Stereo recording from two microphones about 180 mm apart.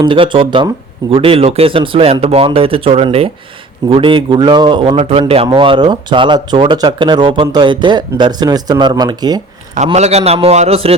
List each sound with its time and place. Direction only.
0.0 s speech: 25° right (ahead or behind)
9.7 s speech: 40° right (ahead or behind)